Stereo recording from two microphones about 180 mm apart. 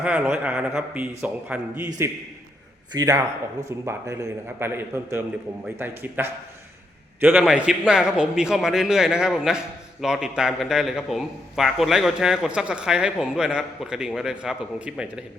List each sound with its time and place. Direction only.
0.0 s a man's voice: 5° right (ahead or behind)
2.9 s a man's voice: 20° right (ahead or behind)